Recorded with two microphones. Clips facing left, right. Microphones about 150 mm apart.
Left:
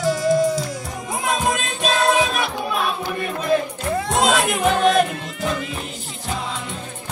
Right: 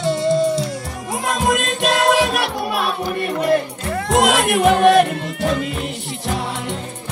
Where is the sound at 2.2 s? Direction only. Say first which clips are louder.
Right 3 dB; 70° right (ahead or behind).